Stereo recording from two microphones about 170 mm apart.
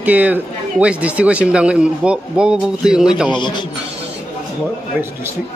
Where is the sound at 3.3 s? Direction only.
25° left (ahead or behind).